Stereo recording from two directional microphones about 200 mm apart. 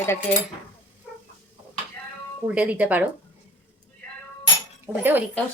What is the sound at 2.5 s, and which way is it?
Speech, 5° right (ahead or behind).